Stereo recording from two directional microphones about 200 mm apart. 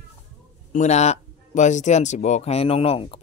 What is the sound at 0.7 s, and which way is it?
Speech, 35° left (ahead or behind).